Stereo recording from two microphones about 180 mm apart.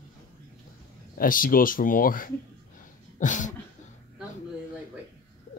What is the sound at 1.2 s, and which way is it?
Speech, 50° left (ahead or behind).